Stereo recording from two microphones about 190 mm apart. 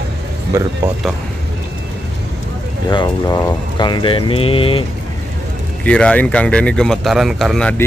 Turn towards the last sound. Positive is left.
turn(degrees=5)  # may be behind; listen again after turning